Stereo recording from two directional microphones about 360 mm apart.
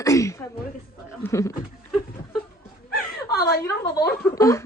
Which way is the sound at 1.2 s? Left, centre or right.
Centre.